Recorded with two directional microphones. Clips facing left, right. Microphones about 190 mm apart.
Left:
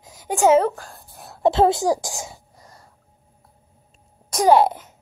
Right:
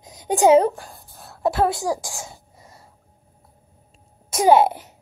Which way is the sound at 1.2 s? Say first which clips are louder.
Left 4 dB; 20° left (ahead or behind).